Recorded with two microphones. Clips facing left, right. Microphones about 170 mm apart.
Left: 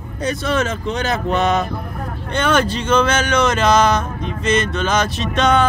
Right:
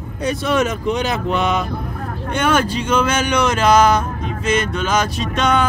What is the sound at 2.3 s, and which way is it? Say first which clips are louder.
Speech: even; 10° right (ahead or behind).